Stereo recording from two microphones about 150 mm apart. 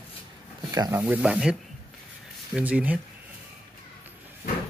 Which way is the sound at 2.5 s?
10° right (ahead or behind).